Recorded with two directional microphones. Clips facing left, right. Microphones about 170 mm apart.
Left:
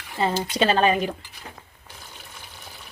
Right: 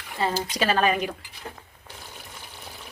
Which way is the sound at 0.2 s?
25° left (ahead or behind).